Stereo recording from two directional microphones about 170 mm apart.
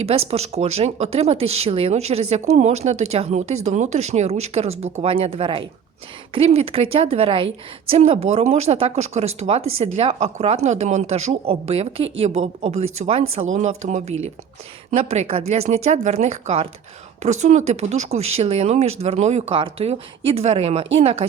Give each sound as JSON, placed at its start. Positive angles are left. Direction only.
{"t": 0.0, "sound": "a woman's voice", "side_deg": -40}